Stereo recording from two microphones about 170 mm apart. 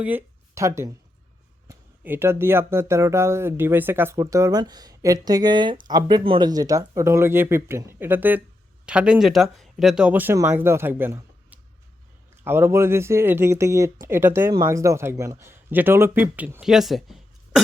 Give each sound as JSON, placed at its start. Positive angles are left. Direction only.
{"t": 0.0, "sound": "speech", "side_deg": -10}